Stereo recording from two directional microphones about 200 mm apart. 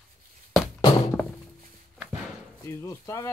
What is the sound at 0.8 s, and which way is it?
Thunk, 25° left (ahead or behind).